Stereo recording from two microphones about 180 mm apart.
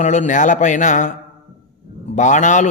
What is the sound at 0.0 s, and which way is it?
A man's voice, 40° left (ahead or behind).